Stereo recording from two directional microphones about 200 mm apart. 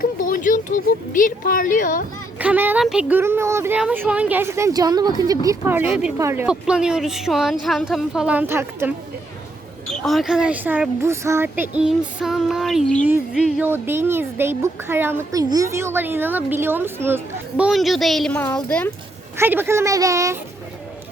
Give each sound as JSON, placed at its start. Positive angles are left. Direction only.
{"t": 0.0, "sound": "speech", "side_deg": 45}
{"t": 2.4, "sound": "speech", "side_deg": -10}
{"t": 9.9, "sound": "speech", "side_deg": 0}
{"t": 19.4, "sound": "speech", "side_deg": -10}